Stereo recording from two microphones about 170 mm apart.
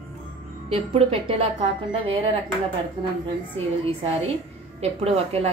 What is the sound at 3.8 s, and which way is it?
A woman's voice, 35° right (ahead or behind).